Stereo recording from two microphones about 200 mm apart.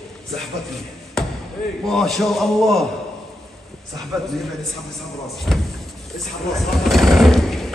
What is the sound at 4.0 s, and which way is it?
Speech, centre (ahead or behind).